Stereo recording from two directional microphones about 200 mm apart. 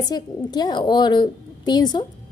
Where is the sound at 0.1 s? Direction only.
20° left (ahead or behind).